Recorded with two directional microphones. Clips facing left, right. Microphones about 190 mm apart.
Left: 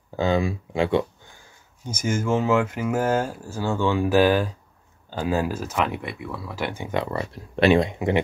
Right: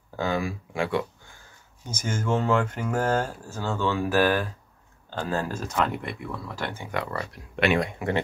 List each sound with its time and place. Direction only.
0.1 s speech: 20° left (ahead or behind)
1.9 s speech: 10° left (ahead or behind); by 7.8 s 30° left (ahead or behind)
7.8 s speech: 20° left (ahead or behind)